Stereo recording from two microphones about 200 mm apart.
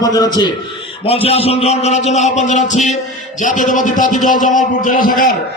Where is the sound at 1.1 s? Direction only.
30° left (ahead or behind).